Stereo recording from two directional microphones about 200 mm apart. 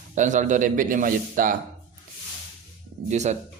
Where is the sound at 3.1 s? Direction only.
35° right (ahead or behind).